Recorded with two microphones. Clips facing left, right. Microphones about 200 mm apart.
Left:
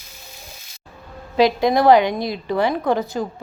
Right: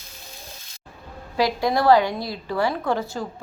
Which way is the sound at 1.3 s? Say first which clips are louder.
Left 5 dB; 20° left (ahead or behind).